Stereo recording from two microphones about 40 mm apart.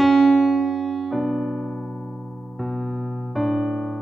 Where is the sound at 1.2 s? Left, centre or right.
Centre.